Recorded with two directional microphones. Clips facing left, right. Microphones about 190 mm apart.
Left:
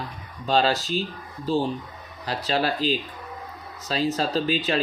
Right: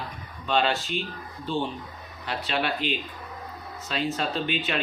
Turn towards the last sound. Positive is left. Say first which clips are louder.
# left 5 dB
turn(degrees=35)  # may be behind; listen again after turning